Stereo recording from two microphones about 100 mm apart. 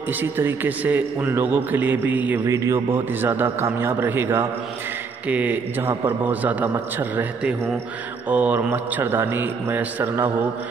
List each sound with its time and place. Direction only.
0.2 s a man's voice: 20° right (ahead or behind)
2.4 s a man's voice: 30° right (ahead or behind)